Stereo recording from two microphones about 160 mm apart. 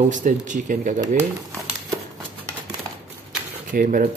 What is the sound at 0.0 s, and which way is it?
Speech, 50° right (ahead or behind).